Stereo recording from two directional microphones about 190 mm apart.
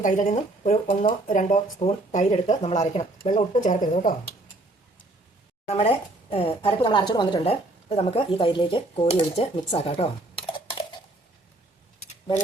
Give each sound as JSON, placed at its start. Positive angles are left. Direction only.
{"t": 0.0, "sound": "speech", "side_deg": 40}
{"t": 5.6, "sound": "a woman's voice", "side_deg": 30}